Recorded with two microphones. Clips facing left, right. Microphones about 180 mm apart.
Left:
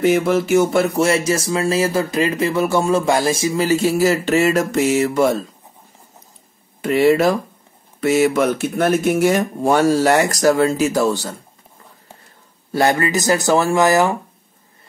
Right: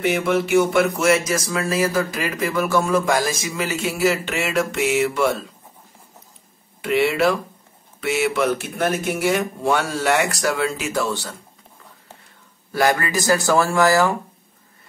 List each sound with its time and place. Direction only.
0.1 s speech: 40° left (ahead or behind)
6.8 s speech: 40° left (ahead or behind)
12.7 s speech: 25° left (ahead or behind)